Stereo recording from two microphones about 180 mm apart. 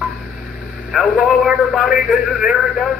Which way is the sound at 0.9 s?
Centre (ahead or behind).